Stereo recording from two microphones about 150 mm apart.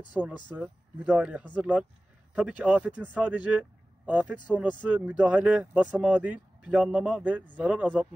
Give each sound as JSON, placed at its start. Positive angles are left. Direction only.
{"t": 0.2, "sound": "speech", "side_deg": -10}